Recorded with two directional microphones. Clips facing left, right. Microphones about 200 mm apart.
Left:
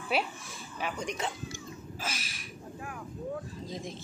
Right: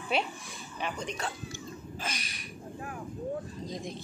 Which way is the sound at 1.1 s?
20° left (ahead or behind).